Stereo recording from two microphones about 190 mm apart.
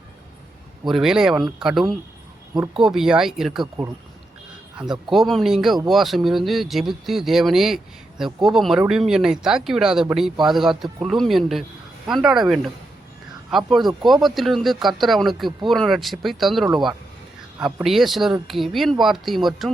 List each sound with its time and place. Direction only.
0.9 s speech: centre (ahead or behind)
5.0 s speech: centre (ahead or behind)
17.7 s speech: centre (ahead or behind)